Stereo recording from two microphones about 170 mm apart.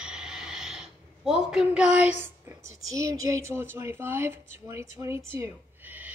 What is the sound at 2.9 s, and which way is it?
Speech, 20° right (ahead or behind).